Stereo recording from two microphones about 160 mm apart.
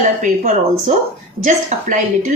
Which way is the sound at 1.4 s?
50° right (ahead or behind).